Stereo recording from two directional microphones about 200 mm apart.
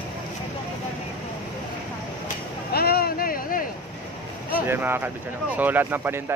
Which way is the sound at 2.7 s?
50° left (ahead or behind).